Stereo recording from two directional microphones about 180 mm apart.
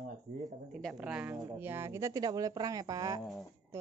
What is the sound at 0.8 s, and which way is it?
A woman's voice, 5° right (ahead or behind).